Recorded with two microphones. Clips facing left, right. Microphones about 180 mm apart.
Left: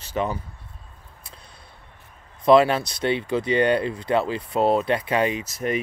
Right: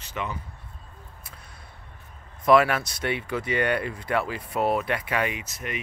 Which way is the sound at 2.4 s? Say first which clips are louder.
Left 3 dB; 25° left (ahead or behind).